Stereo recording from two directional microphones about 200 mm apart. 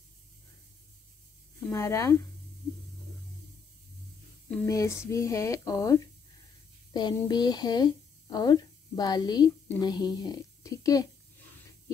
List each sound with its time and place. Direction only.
1.7 s speech: 15° left (ahead or behind)
4.5 s speech: 15° left (ahead or behind)